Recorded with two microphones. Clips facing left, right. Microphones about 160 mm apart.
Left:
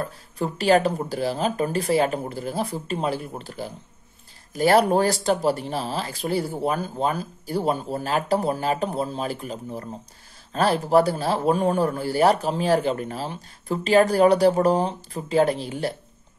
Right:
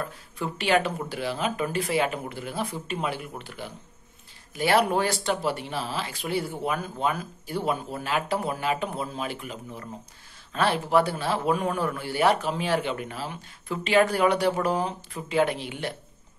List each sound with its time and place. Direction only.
0.0 s speech: 40° left (ahead or behind)